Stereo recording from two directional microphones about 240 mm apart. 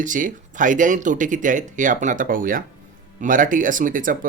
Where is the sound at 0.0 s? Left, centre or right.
Right.